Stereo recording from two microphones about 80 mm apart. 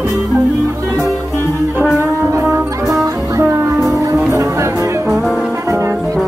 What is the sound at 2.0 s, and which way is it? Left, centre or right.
Music, right.